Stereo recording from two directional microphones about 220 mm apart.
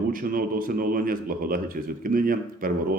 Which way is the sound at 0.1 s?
40° right (ahead or behind).